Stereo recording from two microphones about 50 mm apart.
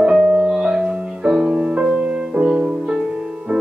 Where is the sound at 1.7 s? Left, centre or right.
Right.